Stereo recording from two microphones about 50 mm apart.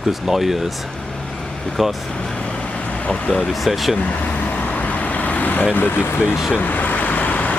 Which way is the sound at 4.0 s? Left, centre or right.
Left.